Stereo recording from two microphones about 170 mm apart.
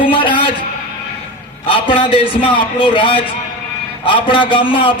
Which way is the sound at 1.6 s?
30° left (ahead or behind).